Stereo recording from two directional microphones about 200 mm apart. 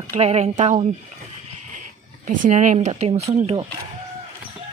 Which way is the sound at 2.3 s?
40° right (ahead or behind).